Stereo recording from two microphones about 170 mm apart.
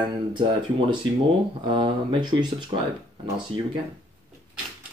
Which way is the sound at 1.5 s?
30° right (ahead or behind).